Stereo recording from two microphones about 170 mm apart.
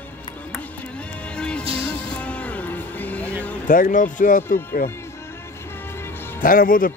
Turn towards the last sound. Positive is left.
turn(degrees=55)  # may be behind; listen again after turning